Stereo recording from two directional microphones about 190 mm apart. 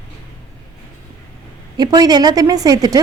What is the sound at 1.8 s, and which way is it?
A woman's voice, 20° right (ahead or behind).